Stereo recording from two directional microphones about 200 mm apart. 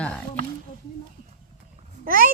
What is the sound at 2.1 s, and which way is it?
Speech, 45° right (ahead or behind).